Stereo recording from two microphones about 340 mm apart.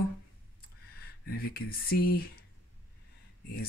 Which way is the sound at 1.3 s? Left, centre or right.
Left.